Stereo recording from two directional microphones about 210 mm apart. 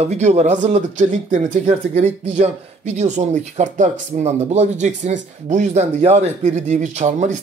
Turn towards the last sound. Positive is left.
turn(degrees=-35)  # may be behind; listen again after turning